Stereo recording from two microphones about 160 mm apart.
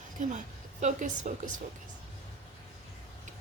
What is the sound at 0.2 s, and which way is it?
A woman's voice, 50° right (ahead or behind).